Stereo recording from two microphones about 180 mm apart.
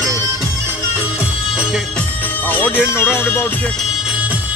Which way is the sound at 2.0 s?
10° left (ahead or behind).